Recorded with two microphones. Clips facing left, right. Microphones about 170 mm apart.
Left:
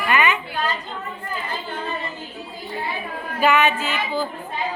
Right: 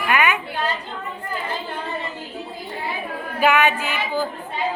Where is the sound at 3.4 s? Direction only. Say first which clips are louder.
Even; 15° right (ahead or behind).